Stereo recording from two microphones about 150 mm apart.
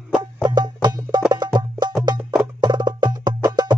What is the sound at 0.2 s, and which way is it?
Music, 30° right (ahead or behind).